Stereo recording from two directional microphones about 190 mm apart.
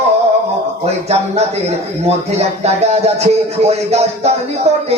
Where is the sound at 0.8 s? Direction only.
35° right (ahead or behind).